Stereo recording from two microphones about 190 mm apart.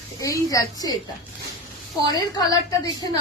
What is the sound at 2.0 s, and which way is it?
Speech, 20° left (ahead or behind).